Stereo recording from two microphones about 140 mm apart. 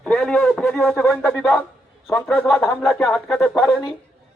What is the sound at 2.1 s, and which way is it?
Music, 10° left (ahead or behind).